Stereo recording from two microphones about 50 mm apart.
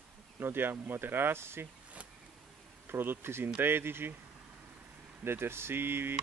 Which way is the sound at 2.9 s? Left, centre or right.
Right.